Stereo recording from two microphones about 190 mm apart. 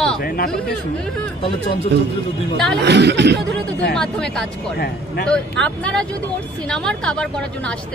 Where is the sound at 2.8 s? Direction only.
65° right (ahead or behind).